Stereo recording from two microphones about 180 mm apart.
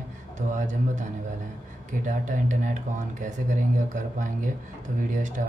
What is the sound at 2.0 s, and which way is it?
Speech, 45° right (ahead or behind).